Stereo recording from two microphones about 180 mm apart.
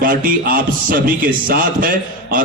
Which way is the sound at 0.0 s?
50° right (ahead or behind).